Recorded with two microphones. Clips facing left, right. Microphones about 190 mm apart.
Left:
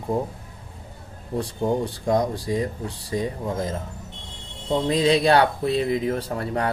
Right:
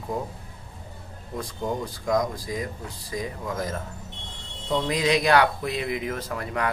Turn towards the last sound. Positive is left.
turn(degrees=30)  # may be behind; listen again after turning